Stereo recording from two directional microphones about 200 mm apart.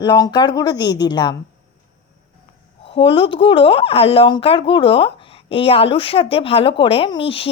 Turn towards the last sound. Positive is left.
turn(degrees=25)  # may be behind; listen again after turning